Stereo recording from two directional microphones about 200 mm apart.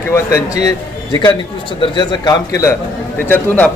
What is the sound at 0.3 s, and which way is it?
Speech, 15° left (ahead or behind).